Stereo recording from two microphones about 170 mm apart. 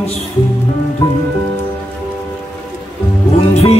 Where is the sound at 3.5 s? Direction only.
40° left (ahead or behind).